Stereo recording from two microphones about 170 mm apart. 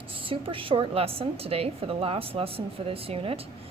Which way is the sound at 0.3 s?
30° right (ahead or behind).